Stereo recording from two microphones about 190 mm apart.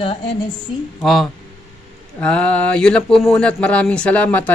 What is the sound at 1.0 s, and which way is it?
Speech, centre (ahead or behind).